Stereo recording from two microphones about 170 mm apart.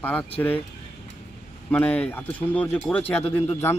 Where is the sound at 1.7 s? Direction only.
10° left (ahead or behind).